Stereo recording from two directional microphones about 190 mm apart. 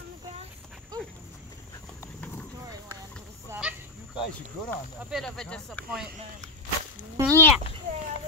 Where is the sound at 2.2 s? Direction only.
10° left (ahead or behind).